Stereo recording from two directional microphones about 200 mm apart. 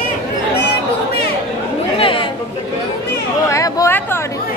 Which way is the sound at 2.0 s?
25° left (ahead or behind).